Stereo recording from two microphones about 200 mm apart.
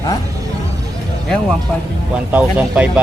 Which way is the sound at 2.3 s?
5° right (ahead or behind).